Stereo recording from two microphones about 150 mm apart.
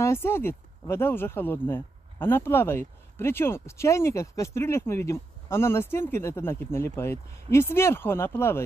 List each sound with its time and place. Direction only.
0.0 s speech: 15° left (ahead or behind)